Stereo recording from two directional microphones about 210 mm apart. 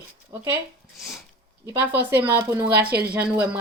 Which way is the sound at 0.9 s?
Centre (ahead or behind).